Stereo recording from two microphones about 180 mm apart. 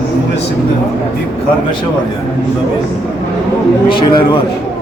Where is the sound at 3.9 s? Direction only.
25° left (ahead or behind).